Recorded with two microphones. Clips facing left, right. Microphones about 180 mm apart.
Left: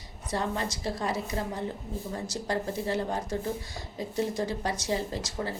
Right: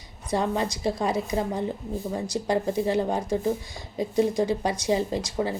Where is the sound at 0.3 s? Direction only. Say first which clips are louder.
Right 5 dB; 15° right (ahead or behind).